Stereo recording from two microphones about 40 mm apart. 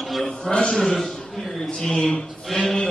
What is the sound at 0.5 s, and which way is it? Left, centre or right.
Speech, left.